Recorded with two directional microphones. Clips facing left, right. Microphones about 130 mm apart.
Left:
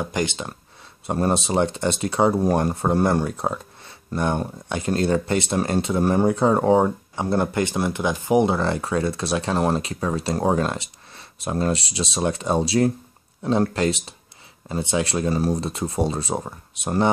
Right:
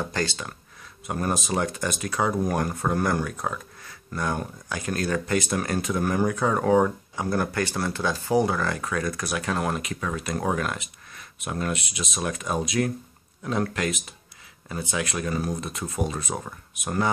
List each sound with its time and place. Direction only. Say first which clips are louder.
0.0 s speech: left 3 dB; 15° left (ahead or behind)